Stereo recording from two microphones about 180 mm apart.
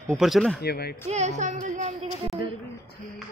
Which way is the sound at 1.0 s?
40° right (ahead or behind).